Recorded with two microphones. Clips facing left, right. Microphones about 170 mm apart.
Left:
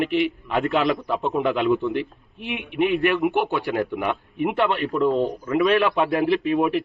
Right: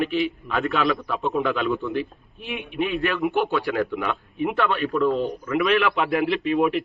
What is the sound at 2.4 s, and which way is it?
Speech, 75° left (ahead or behind).